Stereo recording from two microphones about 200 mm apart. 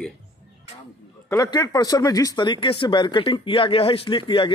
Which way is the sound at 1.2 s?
20° left (ahead or behind).